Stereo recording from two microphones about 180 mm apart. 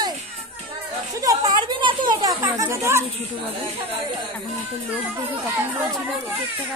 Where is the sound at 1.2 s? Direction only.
20° right (ahead or behind).